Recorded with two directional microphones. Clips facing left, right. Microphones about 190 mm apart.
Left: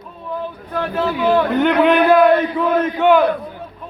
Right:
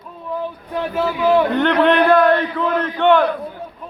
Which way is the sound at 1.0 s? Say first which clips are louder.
Right 1 dB; 5° right (ahead or behind).